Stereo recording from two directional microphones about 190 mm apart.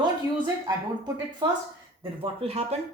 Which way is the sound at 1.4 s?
25° right (ahead or behind).